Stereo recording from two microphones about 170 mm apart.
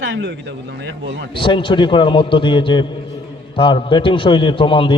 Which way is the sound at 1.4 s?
30° left (ahead or behind).